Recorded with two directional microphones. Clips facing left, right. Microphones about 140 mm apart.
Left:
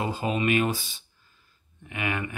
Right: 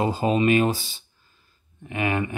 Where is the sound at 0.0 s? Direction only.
30° right (ahead or behind).